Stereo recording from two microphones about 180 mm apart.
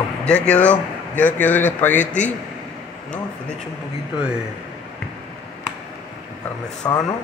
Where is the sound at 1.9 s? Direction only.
40° left (ahead or behind).